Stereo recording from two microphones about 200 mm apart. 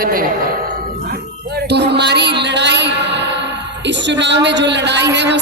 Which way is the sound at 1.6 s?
55° right (ahead or behind).